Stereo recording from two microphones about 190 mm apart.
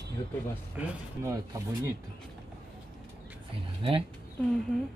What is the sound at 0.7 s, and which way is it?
Speech, 15° right (ahead or behind).